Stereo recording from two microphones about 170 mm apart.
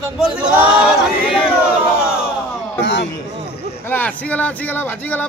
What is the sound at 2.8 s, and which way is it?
Speech, 90° left.